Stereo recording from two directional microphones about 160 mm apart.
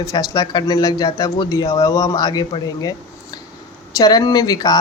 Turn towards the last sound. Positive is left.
turn(degrees=25)  # may be behind; listen again after turning